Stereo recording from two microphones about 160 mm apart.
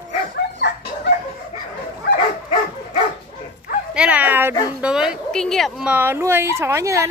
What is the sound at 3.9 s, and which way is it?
A woman's voice, 10° right (ahead or behind).